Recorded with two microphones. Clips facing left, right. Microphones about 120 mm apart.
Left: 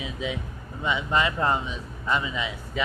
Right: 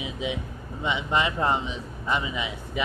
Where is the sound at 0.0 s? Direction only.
20° right (ahead or behind).